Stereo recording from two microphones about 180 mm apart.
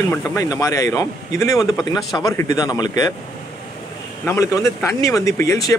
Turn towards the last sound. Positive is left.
turn(degrees=15)  # may be behind; listen again after turning